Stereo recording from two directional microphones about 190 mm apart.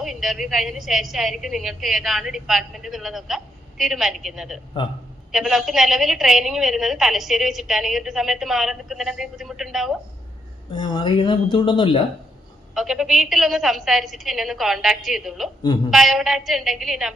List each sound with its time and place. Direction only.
0.0 s a woman's voice: centre (ahead or behind)
10.7 s speech: 25° left (ahead or behind)
12.7 s a woman's voice: centre (ahead or behind)